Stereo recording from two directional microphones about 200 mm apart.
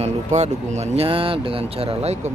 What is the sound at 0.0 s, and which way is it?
Speech, 35° right (ahead or behind).